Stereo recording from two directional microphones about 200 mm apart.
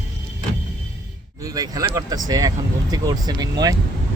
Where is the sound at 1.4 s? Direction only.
20° right (ahead or behind).